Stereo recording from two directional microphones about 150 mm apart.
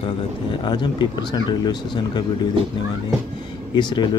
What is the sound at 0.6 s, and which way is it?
Speech, 30° left (ahead or behind).